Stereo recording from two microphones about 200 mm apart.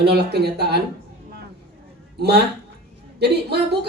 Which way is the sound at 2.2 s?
55° right (ahead or behind).